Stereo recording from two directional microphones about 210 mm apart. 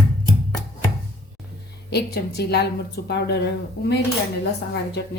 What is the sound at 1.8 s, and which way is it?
A woman's voice, 50° left (ahead or behind).